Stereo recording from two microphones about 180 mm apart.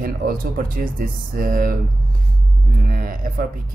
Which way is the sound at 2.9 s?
50° right (ahead or behind).